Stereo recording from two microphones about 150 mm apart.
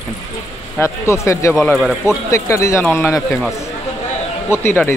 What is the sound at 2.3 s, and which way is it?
Speech, 20° left (ahead or behind).